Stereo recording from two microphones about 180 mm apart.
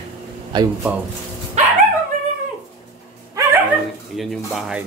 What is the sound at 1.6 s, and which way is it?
Dog, 40° right (ahead or behind).